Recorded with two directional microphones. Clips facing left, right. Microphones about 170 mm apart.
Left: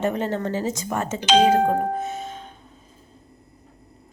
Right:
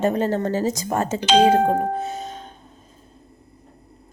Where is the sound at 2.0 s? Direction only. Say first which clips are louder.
Right 1 dB; 35° right (ahead or behind).